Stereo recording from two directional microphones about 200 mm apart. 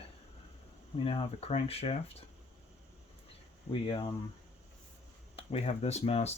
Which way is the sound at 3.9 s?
25° left (ahead or behind).